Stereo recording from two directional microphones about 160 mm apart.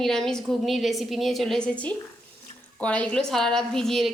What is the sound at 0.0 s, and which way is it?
A woman's voice, 5° left (ahead or behind).